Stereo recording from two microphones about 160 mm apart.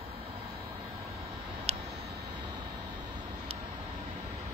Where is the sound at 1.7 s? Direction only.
40° right (ahead or behind).